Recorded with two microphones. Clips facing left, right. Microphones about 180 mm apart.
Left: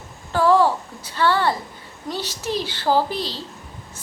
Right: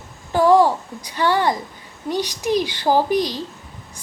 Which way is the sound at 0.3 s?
15° right (ahead or behind).